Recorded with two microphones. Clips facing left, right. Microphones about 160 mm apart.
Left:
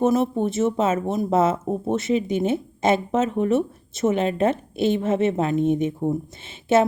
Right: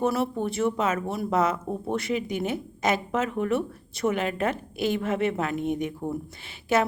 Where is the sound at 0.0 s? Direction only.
20° left (ahead or behind).